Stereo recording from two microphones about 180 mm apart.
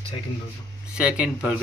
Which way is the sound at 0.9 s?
5° right (ahead or behind).